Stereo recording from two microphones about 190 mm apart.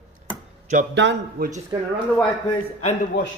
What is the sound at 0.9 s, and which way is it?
Speech, 70° right (ahead or behind).